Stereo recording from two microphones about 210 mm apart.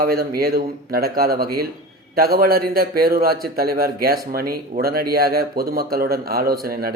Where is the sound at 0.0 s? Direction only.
45° right (ahead or behind).